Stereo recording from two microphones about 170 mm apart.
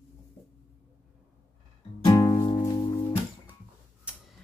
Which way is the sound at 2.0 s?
25° left (ahead or behind).